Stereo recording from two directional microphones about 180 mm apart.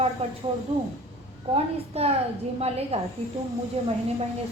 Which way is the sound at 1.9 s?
35° right (ahead or behind).